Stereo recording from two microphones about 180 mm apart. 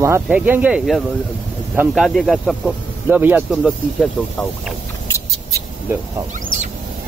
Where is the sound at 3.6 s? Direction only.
5° left (ahead or behind).